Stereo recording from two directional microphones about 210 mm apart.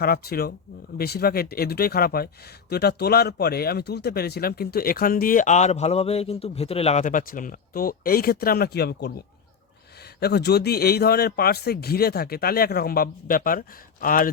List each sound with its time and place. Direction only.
0.0 s speech: 45° left (ahead or behind)
10.2 s speech: 50° left (ahead or behind)